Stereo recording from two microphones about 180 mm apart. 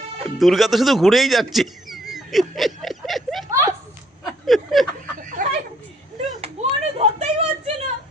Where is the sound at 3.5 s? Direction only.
15° right (ahead or behind).